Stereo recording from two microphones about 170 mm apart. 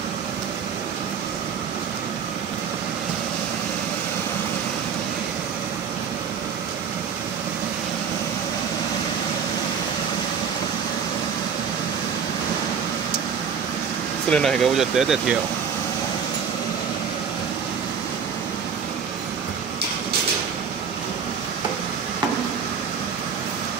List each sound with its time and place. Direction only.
14.3 s speech: centre (ahead or behind)